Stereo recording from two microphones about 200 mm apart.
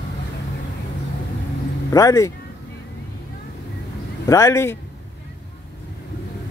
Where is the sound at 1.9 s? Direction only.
15° left (ahead or behind).